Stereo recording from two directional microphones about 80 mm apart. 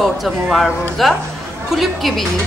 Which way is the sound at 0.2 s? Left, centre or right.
Centre.